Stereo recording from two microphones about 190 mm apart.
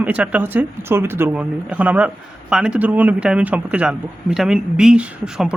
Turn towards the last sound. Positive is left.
turn(degrees=-5)  # may be behind; listen again after turning